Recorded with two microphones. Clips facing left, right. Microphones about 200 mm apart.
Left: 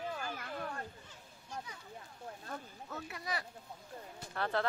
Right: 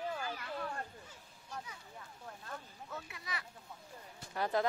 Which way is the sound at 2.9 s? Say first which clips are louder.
Left 5 dB; 40° left (ahead or behind).